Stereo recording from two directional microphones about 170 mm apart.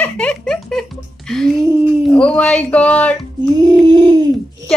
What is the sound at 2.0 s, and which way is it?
A woman's voice, 5° left (ahead or behind).